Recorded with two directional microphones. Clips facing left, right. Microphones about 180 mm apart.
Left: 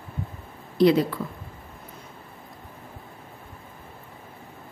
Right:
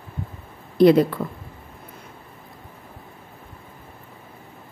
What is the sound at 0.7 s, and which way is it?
Speech, 50° right (ahead or behind).